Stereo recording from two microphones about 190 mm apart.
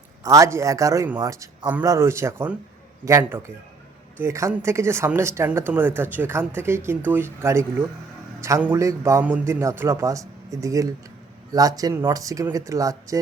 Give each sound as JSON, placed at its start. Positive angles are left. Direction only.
{"t": 0.2, "sound": "speech", "side_deg": -15}